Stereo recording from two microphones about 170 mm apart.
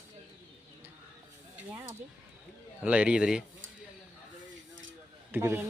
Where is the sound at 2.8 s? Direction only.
5° right (ahead or behind).